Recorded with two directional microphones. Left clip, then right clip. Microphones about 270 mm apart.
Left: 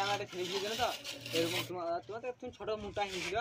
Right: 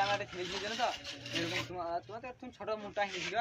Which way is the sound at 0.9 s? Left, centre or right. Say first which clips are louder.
Left 3 dB; centre.